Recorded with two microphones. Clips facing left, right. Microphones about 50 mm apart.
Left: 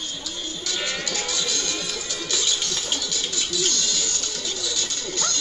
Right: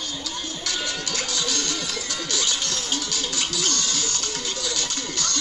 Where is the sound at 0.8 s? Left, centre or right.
Left.